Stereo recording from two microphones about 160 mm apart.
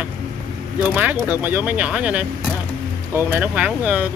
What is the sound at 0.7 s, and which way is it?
Speech, 10° right (ahead or behind).